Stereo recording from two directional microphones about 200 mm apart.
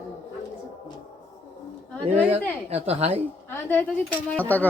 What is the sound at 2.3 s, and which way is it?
Speech, 30° right (ahead or behind).